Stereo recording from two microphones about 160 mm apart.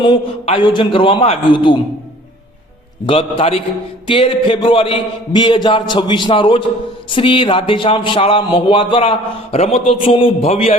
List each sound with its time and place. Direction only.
0.0 s speech: 35° left (ahead or behind)
3.1 s speech: 35° left (ahead or behind)